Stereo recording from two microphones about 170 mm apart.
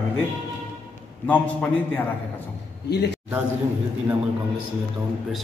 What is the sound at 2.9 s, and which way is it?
Speech, 80° left.